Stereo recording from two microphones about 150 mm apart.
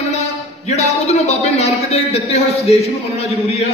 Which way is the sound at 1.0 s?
45° left (ahead or behind).